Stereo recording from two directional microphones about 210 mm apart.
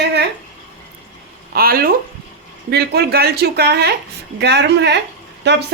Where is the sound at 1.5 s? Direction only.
45° right (ahead or behind).